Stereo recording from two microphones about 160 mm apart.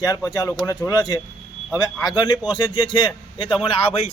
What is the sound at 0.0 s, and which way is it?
A man's voice, 20° left (ahead or behind).